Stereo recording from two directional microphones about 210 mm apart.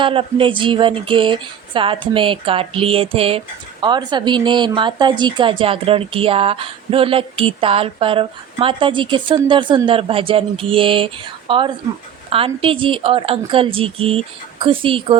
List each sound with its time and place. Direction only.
0.0 s speech: 25° right (ahead or behind)